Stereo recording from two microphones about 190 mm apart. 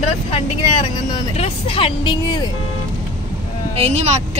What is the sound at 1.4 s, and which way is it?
Speech, 30° left (ahead or behind).